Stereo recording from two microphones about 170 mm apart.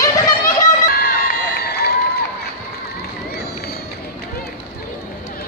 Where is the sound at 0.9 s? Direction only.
70° left (ahead or behind).